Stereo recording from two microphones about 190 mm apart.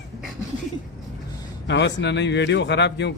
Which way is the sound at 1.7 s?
65° left (ahead or behind).